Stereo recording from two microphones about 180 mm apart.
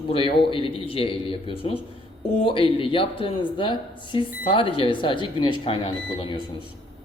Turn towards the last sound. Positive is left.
turn(degrees=30)  # may be behind; listen again after turning